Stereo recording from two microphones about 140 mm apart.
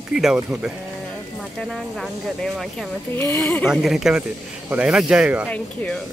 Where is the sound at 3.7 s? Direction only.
5° right (ahead or behind).